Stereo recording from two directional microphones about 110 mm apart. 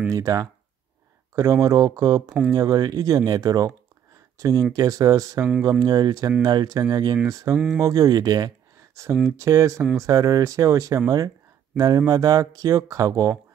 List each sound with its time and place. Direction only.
0.1 s speech: 30° right (ahead or behind)
7.5 s speech: 5° right (ahead or behind)
7.8 s speech: 35° right (ahead or behind)
11.1 s a sound: 35° right (ahead or behind)
12.1 s speech: 35° right (ahead or behind)